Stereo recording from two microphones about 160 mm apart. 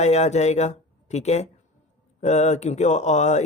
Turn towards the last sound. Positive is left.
turn(degrees=45)  # may be behind; listen again after turning